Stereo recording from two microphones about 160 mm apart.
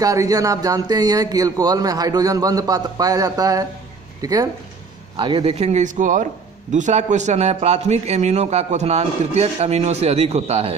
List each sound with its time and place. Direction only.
0.0 s a man's voice: 20° right (ahead or behind); by 10.8 s 40° right (ahead or behind)